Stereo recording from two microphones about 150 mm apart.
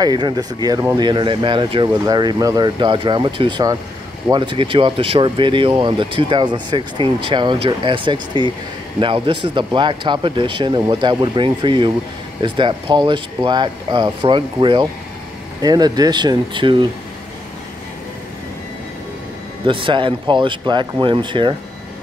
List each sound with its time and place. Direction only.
0.0 s speech: 30° right (ahead or behind)
19.6 s speech: 35° right (ahead or behind)